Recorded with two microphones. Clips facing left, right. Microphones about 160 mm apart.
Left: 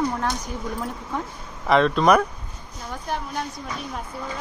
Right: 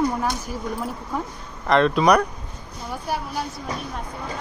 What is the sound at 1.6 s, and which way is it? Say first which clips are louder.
Speech: even; centre (ahead or behind).